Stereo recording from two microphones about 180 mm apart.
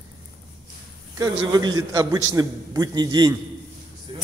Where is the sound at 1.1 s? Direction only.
20° right (ahead or behind).